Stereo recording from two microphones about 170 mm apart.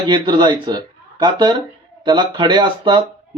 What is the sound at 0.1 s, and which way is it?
Speech, 25° right (ahead or behind).